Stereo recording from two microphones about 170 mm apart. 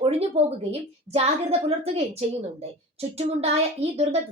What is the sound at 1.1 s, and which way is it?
A woman's voice, 35° right (ahead or behind).